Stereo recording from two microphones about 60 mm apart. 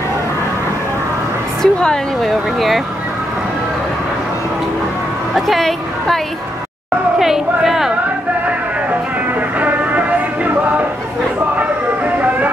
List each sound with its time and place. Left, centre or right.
1.6 s a woman's voice: centre
2.2 s speech: centre
5.3 s a woman's voice: centre
7.2 s speech: centre
9.6 s music: right
11.5 s vehicle: right